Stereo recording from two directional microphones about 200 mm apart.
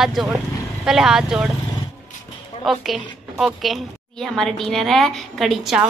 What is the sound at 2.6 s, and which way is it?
A woman's voice, centre (ahead or behind).